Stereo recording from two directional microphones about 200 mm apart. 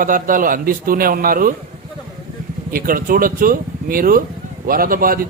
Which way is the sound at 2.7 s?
45° right (ahead or behind).